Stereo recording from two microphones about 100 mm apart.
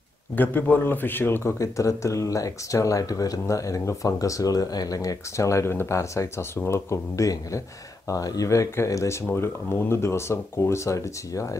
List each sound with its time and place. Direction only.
0.4 s speech: 20° left (ahead or behind)
1.6 s speech: 30° left (ahead or behind)